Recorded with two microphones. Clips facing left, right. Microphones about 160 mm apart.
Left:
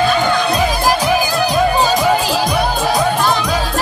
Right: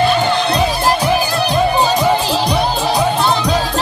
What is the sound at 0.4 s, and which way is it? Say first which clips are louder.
Music: even; 10° left (ahead or behind).